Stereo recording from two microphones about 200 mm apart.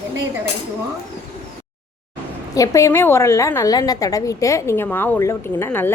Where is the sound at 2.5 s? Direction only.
15° left (ahead or behind).